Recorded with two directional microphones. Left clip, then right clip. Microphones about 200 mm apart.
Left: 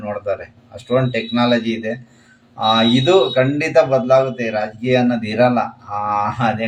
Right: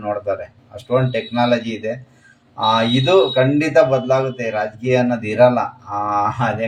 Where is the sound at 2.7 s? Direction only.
5° left (ahead or behind).